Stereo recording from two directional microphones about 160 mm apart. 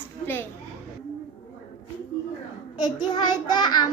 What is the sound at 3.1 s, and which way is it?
Child singing, 30° left (ahead or behind).